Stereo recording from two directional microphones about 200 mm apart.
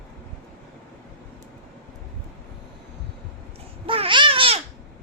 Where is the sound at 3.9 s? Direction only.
25° right (ahead or behind).